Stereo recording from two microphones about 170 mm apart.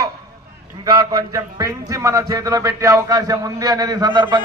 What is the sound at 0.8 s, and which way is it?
A man's voice, 20° right (ahead or behind).